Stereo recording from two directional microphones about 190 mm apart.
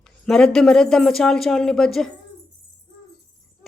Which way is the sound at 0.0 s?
5° left (ahead or behind).